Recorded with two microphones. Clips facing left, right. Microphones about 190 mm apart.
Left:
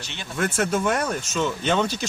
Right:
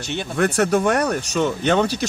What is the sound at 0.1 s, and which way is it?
Speech, 50° right (ahead or behind).